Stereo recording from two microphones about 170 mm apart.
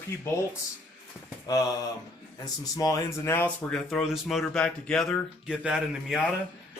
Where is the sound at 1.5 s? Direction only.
20° left (ahead or behind); by 6.2 s 5° right (ahead or behind).